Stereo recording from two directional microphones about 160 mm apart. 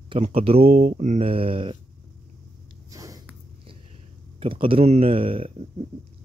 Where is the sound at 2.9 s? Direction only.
20° right (ahead or behind).